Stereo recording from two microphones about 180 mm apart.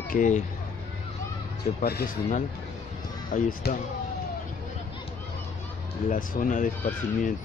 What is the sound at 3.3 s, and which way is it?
Speech, 45° left (ahead or behind).